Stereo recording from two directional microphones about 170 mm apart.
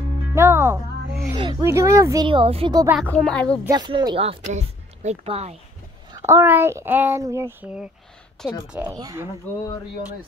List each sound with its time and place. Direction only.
0.3 s music: 15° right (ahead or behind)
1.3 s speech: 25° right (ahead or behind)
1.7 s speech: 15° right (ahead or behind)
2.2 s speech: 30° right (ahead or behind)
3.0 s speech: 5° left (ahead or behind)
3.6 s speech: 25° right (ahead or behind)
6.1 s speech: 15° right (ahead or behind)
8.9 s speech: 20° right (ahead or behind)